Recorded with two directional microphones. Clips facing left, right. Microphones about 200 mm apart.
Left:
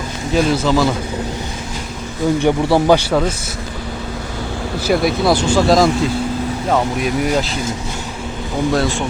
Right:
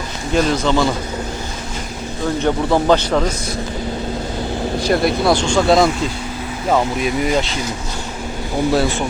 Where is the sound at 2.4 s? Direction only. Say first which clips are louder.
Left 1 dB; 10° left (ahead or behind).